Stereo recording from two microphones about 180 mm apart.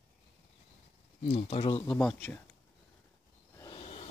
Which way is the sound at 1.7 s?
5° left (ahead or behind).